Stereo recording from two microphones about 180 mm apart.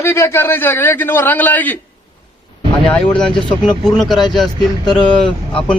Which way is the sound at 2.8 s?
5° left (ahead or behind).